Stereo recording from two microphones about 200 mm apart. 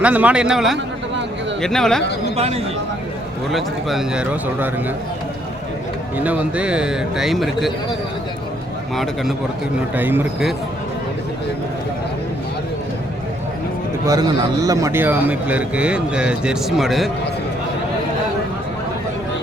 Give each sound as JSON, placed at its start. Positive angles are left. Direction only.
{"t": 0.0, "sound": "a man's voice", "side_deg": -5}
{"t": 2.3, "sound": "speech", "side_deg": -30}
{"t": 3.5, "sound": "a man's voice", "side_deg": 0}
{"t": 6.1, "sound": "a man's voice", "side_deg": -5}
{"t": 9.9, "sound": "a man's voice", "side_deg": -10}
{"t": 14.1, "sound": "a man's voice", "side_deg": -20}